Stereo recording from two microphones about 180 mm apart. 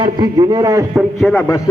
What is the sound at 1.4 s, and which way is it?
Speech, 15° left (ahead or behind).